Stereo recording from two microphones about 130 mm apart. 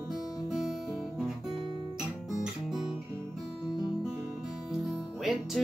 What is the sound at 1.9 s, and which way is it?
Guitar, 5° right (ahead or behind).